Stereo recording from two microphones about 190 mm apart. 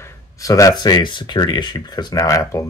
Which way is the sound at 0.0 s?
15° left (ahead or behind).